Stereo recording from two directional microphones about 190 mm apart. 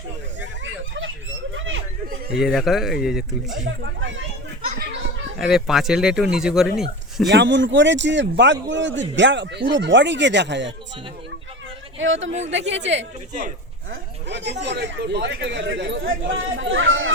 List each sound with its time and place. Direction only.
0.6 s a sound: 75° right (ahead or behind)
1.5 s chatter: 80° right
2.3 s speech: centre (ahead or behind)
3.7 s speech: 70° right (ahead or behind)
5.4 s speech: centre (ahead or behind)
7.3 s a man's voice: 70° right (ahead or behind)
11.9 s a man's voice: 80° right
16.4 s speech: 90° right